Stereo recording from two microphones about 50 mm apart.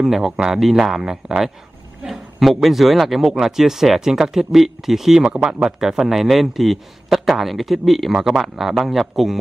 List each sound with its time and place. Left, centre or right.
0.0 s a man's voice: centre
5.2 s speech: centre